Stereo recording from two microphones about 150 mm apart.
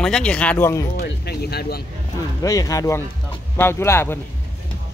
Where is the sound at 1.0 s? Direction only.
90° left.